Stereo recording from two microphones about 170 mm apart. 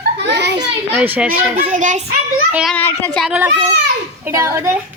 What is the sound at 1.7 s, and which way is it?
Speech, 45° right (ahead or behind).